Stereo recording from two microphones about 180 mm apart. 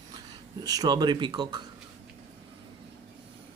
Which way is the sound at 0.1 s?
20° right (ahead or behind).